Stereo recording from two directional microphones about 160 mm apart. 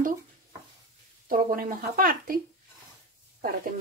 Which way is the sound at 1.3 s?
60° right (ahead or behind).